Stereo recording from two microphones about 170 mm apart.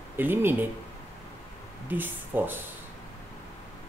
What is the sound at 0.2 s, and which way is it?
Speech, 10° right (ahead or behind).